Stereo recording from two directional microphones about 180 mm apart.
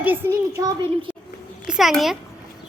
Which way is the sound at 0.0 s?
10° right (ahead or behind).